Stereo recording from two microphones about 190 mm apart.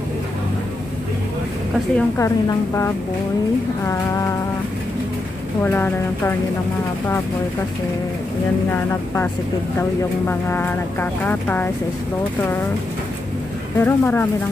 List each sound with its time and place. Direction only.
2.0 s speech: 15° left (ahead or behind)
5.6 s speech: 10° left (ahead or behind)
8.6 s speech: 10° left (ahead or behind)
13.7 s speech: 10° left (ahead or behind)